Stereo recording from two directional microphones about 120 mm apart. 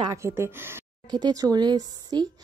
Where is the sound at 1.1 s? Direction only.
35° right (ahead or behind).